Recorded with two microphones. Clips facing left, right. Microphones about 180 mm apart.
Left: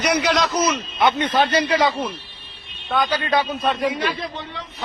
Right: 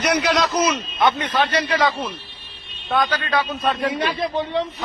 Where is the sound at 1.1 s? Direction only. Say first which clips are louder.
Left 2 dB; 30° left (ahead or behind).